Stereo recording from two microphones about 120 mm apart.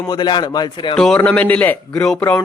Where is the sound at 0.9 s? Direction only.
5° left (ahead or behind).